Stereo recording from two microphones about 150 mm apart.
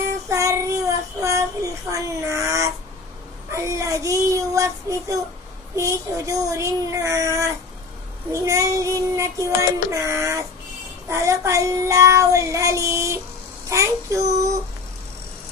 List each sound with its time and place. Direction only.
0.3 s child singing: 20° right (ahead or behind)
13.7 s a child's voice: 20° right (ahead or behind)